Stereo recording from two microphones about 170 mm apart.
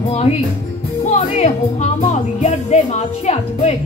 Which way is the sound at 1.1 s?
45° left (ahead or behind).